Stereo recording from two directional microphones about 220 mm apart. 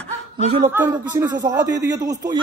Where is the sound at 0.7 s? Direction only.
10° right (ahead or behind).